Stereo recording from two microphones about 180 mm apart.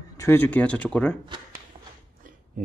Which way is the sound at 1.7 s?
25° right (ahead or behind).